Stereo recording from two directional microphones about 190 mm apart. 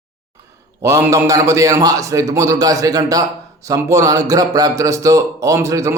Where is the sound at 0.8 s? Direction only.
15° right (ahead or behind).